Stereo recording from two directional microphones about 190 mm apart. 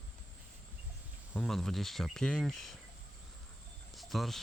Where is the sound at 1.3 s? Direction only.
Centre (ahead or behind).